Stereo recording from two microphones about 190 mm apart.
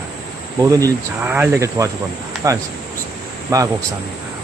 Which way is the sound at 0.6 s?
15° right (ahead or behind).